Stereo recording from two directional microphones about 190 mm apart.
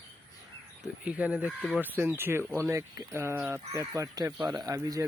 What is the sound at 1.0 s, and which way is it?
Speech, 5° right (ahead or behind).